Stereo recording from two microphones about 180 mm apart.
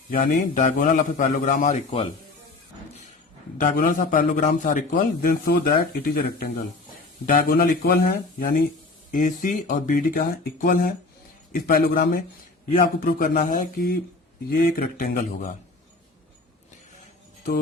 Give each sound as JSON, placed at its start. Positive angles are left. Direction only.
{"t": 0.1, "sound": "a man's voice", "side_deg": 50}
{"t": 3.6, "sound": "a man's voice", "side_deg": 50}